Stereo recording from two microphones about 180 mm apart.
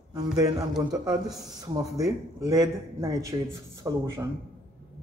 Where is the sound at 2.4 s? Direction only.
20° right (ahead or behind).